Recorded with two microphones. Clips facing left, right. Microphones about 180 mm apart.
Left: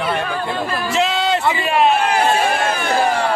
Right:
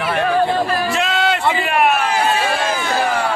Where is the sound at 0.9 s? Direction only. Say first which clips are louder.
Left 1 dB; 20° left (ahead or behind).